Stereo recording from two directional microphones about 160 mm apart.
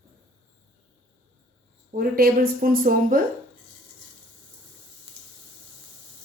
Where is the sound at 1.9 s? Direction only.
65° right (ahead or behind).